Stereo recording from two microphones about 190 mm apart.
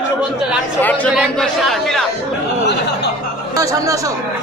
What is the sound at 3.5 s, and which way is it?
Speech, 15° right (ahead or behind).